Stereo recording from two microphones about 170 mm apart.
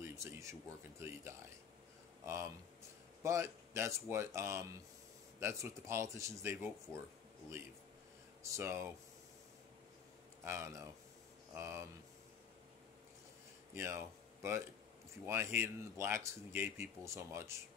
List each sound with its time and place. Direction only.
0.0 s speech: 15° right (ahead or behind)
2.2 s speech: 15° right (ahead or behind)
8.4 s speech: 15° right (ahead or behind)
10.4 s speech: 15° right (ahead or behind)
13.7 s speech: 15° right (ahead or behind)